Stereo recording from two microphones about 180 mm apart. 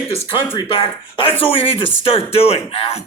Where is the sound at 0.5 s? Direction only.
30° left (ahead or behind).